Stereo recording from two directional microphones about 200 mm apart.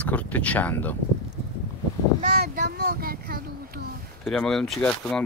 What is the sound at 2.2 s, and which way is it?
Speech, 45° right (ahead or behind).